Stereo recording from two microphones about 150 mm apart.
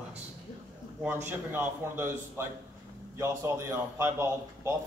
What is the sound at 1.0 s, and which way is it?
A man's voice, 15° right (ahead or behind).